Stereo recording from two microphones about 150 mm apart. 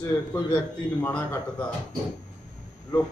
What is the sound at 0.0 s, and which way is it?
A man's voice, 15° left (ahead or behind).